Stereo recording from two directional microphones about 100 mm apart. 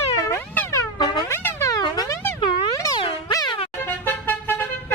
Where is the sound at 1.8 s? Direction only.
40° left (ahead or behind).